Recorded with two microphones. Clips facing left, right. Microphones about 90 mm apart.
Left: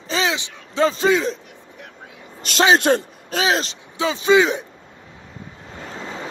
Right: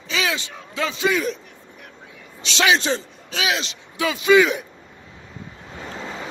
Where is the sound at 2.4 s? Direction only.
50° left (ahead or behind).